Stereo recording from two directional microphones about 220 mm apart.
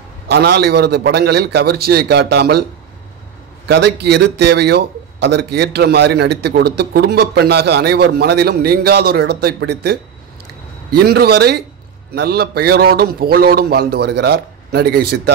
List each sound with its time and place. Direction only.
0.3 s a man's voice: 45° right (ahead or behind)
3.6 s a man's voice: 50° right (ahead or behind)
11.1 s a man's voice: 45° right (ahead or behind)